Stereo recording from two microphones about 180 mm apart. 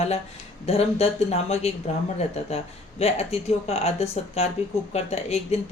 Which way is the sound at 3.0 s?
35° left (ahead or behind).